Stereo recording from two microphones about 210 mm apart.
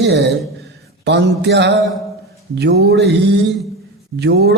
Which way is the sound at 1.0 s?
55° right (ahead or behind).